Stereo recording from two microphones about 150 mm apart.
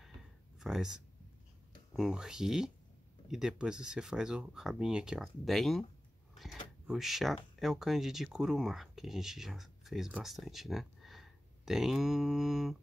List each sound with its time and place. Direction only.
0.6 s speech: 5° right (ahead or behind)